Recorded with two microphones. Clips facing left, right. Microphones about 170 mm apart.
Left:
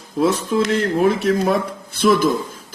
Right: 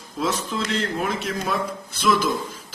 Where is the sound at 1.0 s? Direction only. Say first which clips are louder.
Left 10 dB; 60° left (ahead or behind).